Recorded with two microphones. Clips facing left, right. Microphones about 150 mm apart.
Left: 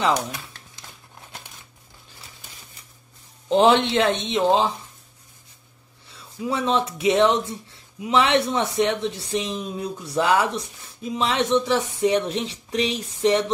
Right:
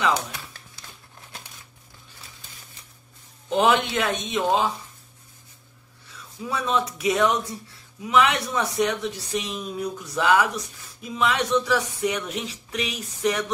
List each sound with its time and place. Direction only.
3.4 s speech: 30° left (ahead or behind)
6.1 s speech: 25° left (ahead or behind)